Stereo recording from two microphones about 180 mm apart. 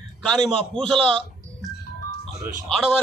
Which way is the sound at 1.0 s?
30° right (ahead or behind).